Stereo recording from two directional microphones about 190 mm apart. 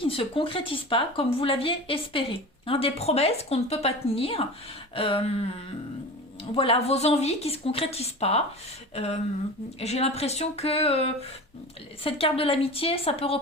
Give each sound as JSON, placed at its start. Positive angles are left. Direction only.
{"t": 0.0, "sound": "a woman's voice", "side_deg": 30}
{"t": 6.6, "sound": "a woman's voice", "side_deg": 30}
{"t": 9.8, "sound": "a woman's voice", "side_deg": 35}